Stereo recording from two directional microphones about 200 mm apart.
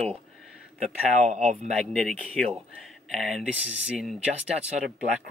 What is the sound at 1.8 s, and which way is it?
Speech, centre (ahead or behind).